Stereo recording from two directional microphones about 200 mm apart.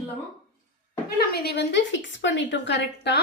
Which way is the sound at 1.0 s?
50° left (ahead or behind).